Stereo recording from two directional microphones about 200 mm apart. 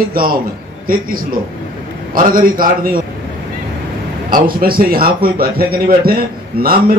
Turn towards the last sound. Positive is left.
turn(degrees=-45)  # may be behind; listen again after turning